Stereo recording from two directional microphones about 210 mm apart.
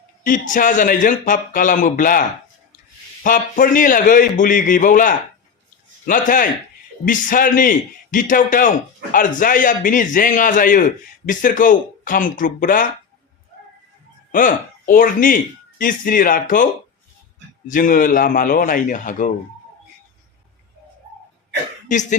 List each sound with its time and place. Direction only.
0.3 s a man's voice: 40° left (ahead or behind)
3.2 s a man's voice: 40° left (ahead or behind)
14.3 s a man's voice: 40° left (ahead or behind)
17.7 s a man's voice: 40° left (ahead or behind)